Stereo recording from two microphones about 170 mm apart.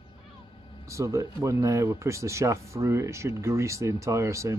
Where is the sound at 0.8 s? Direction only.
20° right (ahead or behind).